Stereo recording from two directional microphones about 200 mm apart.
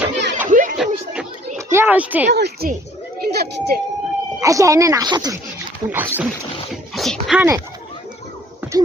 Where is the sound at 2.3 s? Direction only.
50° right (ahead or behind).